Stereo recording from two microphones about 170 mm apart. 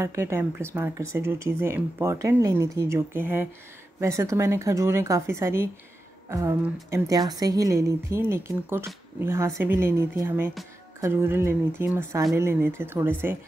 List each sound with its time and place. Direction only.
0.0 s a woman's voice: 15° right (ahead or behind)